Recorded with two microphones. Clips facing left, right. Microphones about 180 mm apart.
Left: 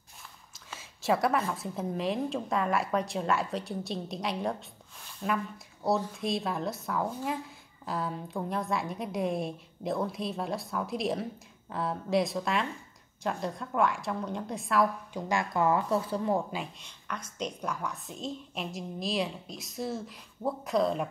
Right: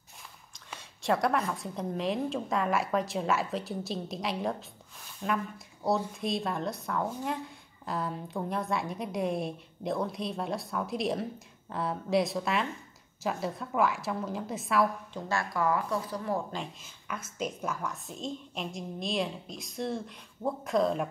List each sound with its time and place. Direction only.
0.7 s a woman's voice: centre (ahead or behind)
15.1 s speech: 15° left (ahead or behind)
16.8 s a woman's voice: 5° right (ahead or behind)